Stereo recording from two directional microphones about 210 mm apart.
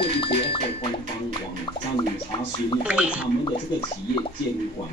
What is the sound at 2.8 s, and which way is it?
Gargling, 5° right (ahead or behind).